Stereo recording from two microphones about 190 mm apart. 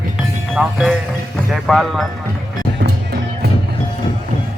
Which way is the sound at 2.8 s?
55° right (ahead or behind).